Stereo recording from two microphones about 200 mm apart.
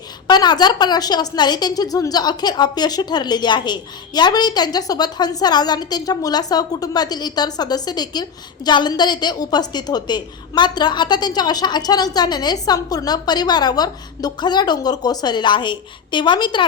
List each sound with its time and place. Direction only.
0.3 s a woman's voice: 20° left (ahead or behind)